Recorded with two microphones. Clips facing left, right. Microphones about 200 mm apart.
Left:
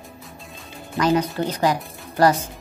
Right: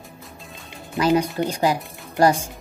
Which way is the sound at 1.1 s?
15° right (ahead or behind).